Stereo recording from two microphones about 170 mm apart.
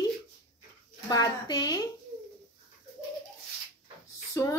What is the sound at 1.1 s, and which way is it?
Speech, 20° left (ahead or behind).